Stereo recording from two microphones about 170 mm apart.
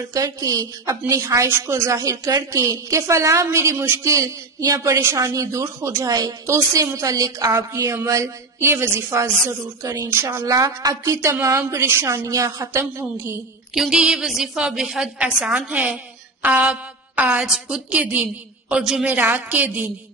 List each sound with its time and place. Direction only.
0.1 s a woman's voice: 20° right (ahead or behind)
13.7 s a woman's voice: 5° right (ahead or behind)